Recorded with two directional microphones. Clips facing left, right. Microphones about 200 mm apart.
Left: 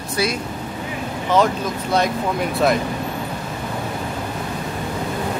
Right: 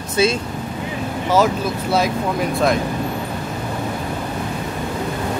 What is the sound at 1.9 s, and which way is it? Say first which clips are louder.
Speech: even; centre (ahead or behind).